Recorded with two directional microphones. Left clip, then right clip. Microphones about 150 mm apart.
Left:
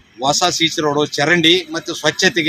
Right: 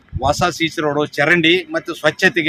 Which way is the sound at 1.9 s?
35° right (ahead or behind).